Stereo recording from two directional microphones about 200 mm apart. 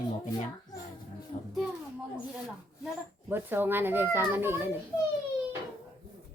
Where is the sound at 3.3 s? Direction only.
10° right (ahead or behind).